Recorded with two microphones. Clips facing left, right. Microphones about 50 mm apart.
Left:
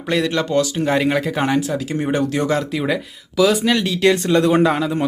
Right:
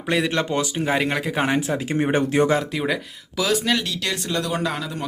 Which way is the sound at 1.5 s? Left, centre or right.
Right.